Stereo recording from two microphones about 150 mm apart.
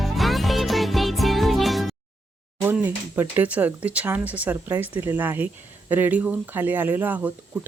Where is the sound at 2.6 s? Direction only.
10° right (ahead or behind).